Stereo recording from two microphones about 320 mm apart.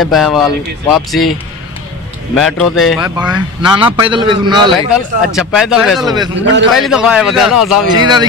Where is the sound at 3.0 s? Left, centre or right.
Centre.